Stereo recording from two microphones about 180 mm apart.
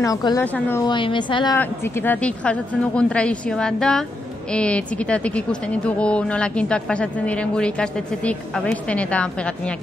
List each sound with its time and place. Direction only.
0.0 s a woman's voice: 20° left (ahead or behind)
0.8 s a woman's voice: 25° left (ahead or behind)
1.6 s a woman's voice: 10° left (ahead or behind)